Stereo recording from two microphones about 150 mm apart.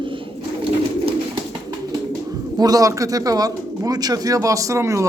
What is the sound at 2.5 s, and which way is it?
Speech, 25° right (ahead or behind).